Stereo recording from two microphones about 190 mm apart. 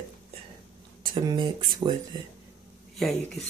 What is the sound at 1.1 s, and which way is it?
Speech, 25° right (ahead or behind).